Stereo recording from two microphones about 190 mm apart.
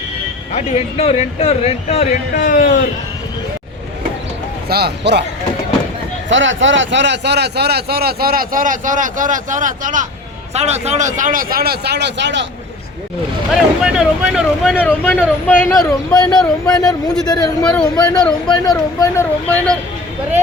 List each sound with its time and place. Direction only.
0.5 s speech: 30° left (ahead or behind)
4.7 s speech: 60° right (ahead or behind)
6.2 s speech: 80° right
13.5 s speech: 5° right (ahead or behind); by 17.5 s 20° left (ahead or behind)
17.6 s speech: 5° left (ahead or behind)
17.9 s speech: 20° left (ahead or behind)